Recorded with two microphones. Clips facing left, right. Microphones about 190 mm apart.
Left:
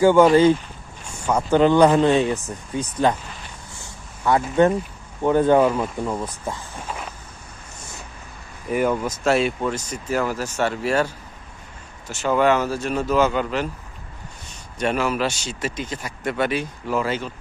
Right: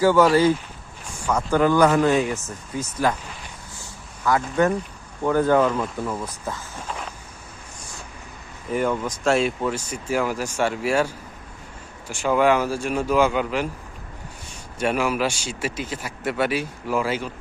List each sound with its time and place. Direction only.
0.0 s speech: 20° left (ahead or behind)
4.2 s speech: 25° left (ahead or behind); by 7.1 s 10° left (ahead or behind)
8.7 s speech: 10° left (ahead or behind); by 13.7 s 10° right (ahead or behind)
14.8 s speech: 10° right (ahead or behind)